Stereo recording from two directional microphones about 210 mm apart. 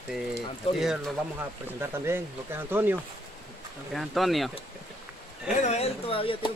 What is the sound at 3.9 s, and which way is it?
Speech, centre (ahead or behind).